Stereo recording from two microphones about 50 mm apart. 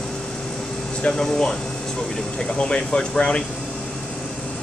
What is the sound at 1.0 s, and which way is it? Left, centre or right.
Speech, centre.